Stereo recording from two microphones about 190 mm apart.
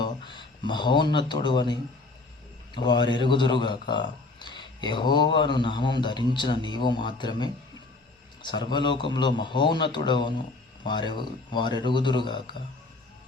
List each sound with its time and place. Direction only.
0.0 s speech: 25° left (ahead or behind)
2.7 s a man's voice: 25° left (ahead or behind)